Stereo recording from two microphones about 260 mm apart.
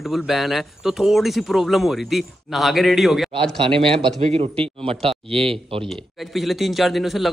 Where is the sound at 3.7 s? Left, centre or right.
Right.